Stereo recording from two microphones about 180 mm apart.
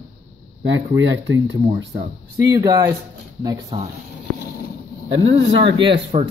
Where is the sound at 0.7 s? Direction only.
90° right.